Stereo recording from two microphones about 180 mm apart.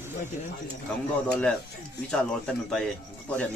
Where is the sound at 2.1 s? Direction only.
5° left (ahead or behind).